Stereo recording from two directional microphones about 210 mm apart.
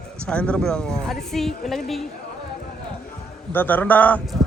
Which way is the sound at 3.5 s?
10° left (ahead or behind).